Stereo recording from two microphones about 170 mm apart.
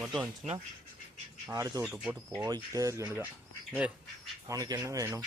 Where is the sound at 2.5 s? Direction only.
20° right (ahead or behind).